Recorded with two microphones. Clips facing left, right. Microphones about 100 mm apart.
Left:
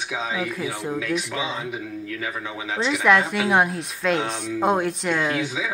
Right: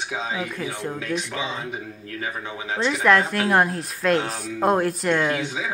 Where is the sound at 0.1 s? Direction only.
25° right (ahead or behind).